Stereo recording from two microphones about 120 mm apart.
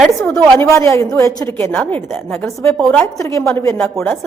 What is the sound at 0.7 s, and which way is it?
A woman's voice, 25° left (ahead or behind).